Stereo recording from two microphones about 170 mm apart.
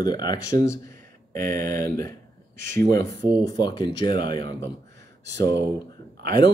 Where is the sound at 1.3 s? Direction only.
55° right (ahead or behind).